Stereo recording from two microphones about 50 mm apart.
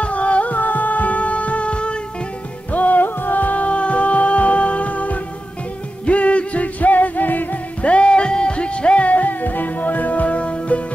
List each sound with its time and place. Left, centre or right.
0.0 s music: left
2.7 s music: left
7.9 s music: left